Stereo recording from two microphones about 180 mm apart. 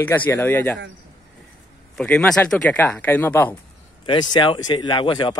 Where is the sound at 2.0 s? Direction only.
5° left (ahead or behind).